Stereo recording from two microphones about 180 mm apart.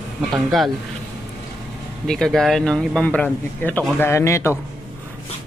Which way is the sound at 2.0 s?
5° left (ahead or behind).